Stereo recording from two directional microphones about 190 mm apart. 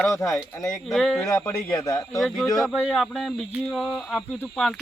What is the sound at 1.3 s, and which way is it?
Speech, 10° left (ahead or behind).